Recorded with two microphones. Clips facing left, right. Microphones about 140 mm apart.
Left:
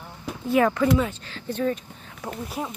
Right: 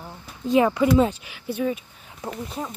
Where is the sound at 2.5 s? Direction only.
10° left (ahead or behind).